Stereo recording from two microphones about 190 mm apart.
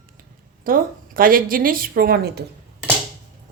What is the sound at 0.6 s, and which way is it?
A woman's voice, 50° right (ahead or behind).